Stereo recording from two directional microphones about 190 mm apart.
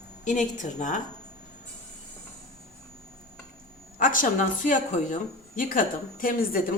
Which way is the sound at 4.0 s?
45° left (ahead or behind).